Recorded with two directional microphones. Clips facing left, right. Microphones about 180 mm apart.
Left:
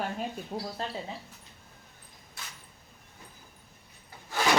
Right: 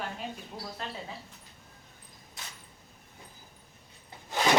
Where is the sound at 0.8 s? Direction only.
30° left (ahead or behind).